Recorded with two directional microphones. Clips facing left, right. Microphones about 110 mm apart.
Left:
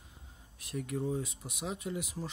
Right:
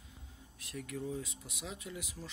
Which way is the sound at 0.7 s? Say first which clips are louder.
Left 6 dB; 30° left (ahead or behind).